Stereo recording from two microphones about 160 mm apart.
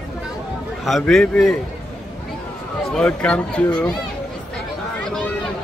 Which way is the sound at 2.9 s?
5° left (ahead or behind).